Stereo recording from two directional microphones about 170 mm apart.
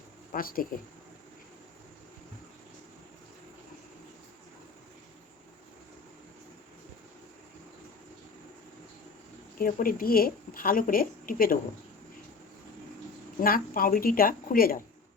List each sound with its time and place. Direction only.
0.3 s speech: 55° left (ahead or behind)
9.6 s a woman's voice: 55° left (ahead or behind)
13.4 s a woman's voice: 55° left (ahead or behind)